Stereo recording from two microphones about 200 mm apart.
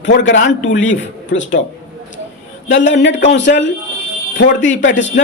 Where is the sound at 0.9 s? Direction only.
70° left (ahead or behind).